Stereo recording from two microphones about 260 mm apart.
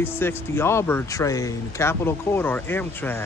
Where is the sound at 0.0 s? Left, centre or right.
Centre.